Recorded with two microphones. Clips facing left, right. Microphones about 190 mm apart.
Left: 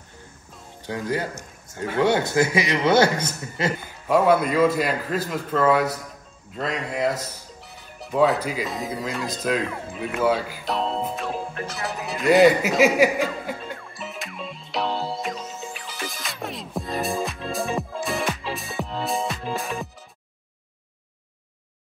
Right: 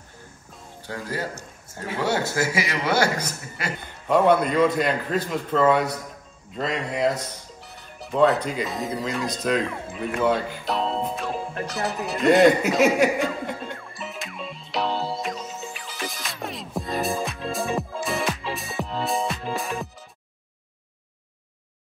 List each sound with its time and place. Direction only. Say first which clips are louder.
0.8 s a man's voice: left 4 dB; 15° left (ahead or behind)
3.8 s a man's voice: right 1 dB; 5° left (ahead or behind)
11.6 s music: right 3 dB; centre (ahead or behind)